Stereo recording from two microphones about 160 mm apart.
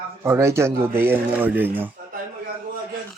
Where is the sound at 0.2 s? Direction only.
20° right (ahead or behind).